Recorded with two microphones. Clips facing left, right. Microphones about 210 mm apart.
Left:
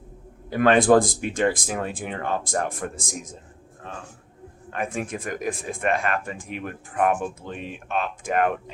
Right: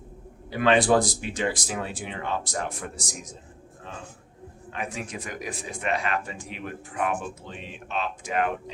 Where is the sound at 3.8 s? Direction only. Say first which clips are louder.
Left 3 dB; 50° left (ahead or behind).